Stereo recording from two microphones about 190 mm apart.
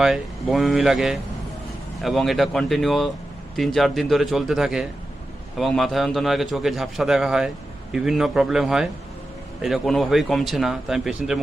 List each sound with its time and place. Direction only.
0.0 s a man's voice: centre (ahead or behind)